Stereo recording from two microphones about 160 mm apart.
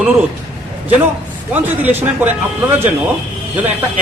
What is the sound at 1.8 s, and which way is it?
Speech, 15° right (ahead or behind).